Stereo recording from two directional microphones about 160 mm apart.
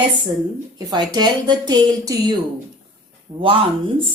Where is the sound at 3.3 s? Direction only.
35° right (ahead or behind).